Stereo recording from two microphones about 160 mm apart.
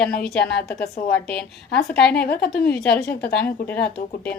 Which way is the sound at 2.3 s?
75° left (ahead or behind).